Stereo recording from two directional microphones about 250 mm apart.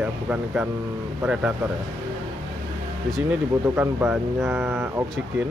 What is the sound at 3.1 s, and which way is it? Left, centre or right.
Speech, centre.